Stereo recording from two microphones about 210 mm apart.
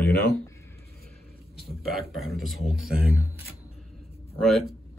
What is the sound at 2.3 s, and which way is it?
Speech, centre (ahead or behind).